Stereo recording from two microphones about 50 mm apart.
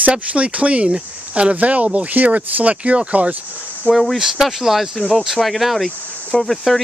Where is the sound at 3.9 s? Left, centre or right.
Centre.